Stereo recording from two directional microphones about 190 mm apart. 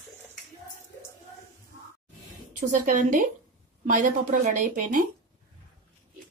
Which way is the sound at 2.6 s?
45° right (ahead or behind).